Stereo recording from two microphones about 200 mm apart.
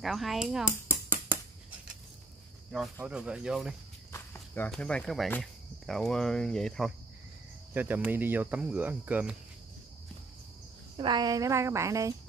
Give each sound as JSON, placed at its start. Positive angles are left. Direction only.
{"t": 0.0, "sound": "dishes", "side_deg": 0}
{"t": 2.7, "sound": "speech", "side_deg": -5}
{"t": 4.1, "sound": "speech", "side_deg": 10}
{"t": 7.7, "sound": "speech", "side_deg": -10}
{"t": 11.0, "sound": "speech", "side_deg": -20}